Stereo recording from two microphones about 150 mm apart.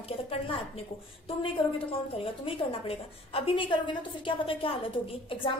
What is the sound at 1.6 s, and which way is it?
A woman's voice, 30° left (ahead or behind).